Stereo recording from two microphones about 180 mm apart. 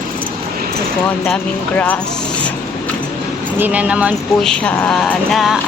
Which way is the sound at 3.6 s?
10° right (ahead or behind).